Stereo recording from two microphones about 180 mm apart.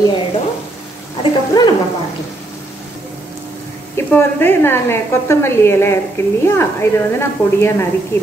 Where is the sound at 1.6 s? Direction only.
25° left (ahead or behind).